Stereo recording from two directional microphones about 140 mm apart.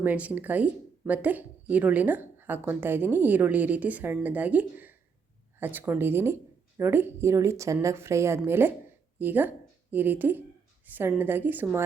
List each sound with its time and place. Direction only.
0.0 s speech: 10° right (ahead or behind)